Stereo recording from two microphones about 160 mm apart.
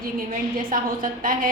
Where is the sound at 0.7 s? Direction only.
60° right (ahead or behind).